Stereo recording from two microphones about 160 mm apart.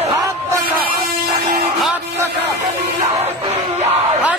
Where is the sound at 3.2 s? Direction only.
40° right (ahead or behind).